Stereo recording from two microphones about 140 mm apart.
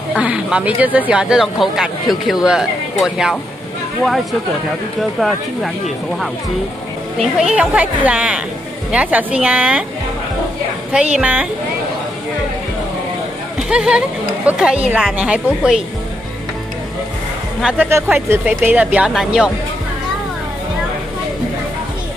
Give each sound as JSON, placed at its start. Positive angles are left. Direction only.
{"t": 0.1, "sound": "speech", "side_deg": -10}
{"t": 7.2, "sound": "speech", "side_deg": -5}
{"t": 11.1, "sound": "speech", "side_deg": -10}
{"t": 13.7, "sound": "speech", "side_deg": -5}
{"t": 17.6, "sound": "speech", "side_deg": -5}